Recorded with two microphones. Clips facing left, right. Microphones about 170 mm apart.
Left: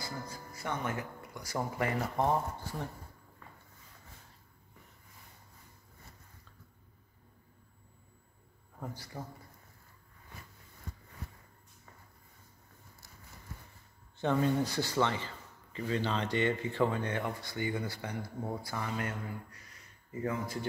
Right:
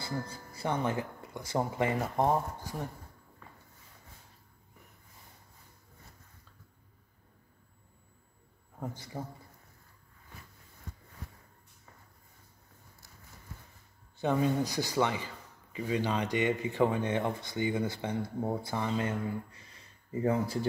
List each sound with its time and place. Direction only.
0.0 s speech: 30° right (ahead or behind)
8.7 s a man's voice: 20° right (ahead or behind)
14.2 s speech: 10° right (ahead or behind); by 20.5 s 30° right (ahead or behind)